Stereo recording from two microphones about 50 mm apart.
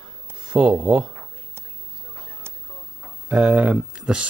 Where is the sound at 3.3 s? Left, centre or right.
Right.